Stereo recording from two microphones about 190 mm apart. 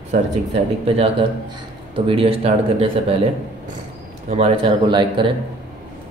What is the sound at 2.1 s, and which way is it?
Speech, 30° right (ahead or behind).